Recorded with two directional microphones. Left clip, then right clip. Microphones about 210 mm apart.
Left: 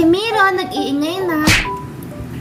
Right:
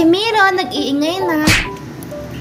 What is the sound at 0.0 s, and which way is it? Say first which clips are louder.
Music: right 1 dB; 10° left (ahead or behind).